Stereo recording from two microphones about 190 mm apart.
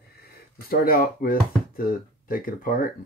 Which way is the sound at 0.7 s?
50° left (ahead or behind).